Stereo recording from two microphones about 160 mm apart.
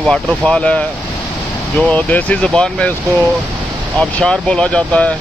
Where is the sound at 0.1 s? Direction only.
5° left (ahead or behind).